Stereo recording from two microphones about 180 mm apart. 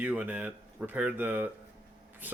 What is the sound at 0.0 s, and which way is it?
Speech, 10° right (ahead or behind).